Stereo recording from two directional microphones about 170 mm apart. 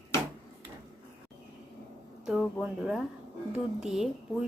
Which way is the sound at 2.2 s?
5° right (ahead or behind).